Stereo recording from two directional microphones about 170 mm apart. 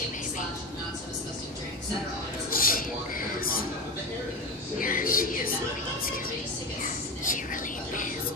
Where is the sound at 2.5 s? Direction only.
55° left (ahead or behind).